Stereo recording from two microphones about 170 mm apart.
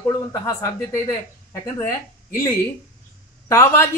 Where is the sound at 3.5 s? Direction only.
15° left (ahead or behind).